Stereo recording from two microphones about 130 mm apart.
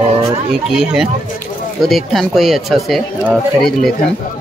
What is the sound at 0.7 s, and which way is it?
Speech, 5° right (ahead or behind).